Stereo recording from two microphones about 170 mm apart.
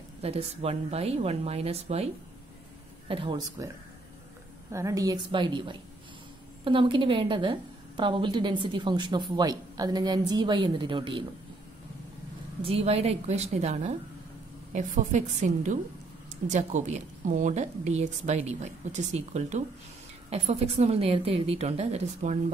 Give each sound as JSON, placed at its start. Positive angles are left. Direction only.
{"t": 0.2, "sound": "a woman's voice", "side_deg": -35}
{"t": 3.1, "sound": "a woman's voice", "side_deg": -30}
{"t": 12.6, "sound": "a woman's voice", "side_deg": -35}